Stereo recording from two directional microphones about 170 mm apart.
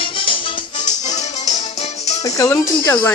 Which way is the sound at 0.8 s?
45° left (ahead or behind).